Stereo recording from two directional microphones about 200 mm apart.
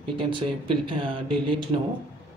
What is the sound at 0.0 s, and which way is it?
Mantra, 25° right (ahead or behind).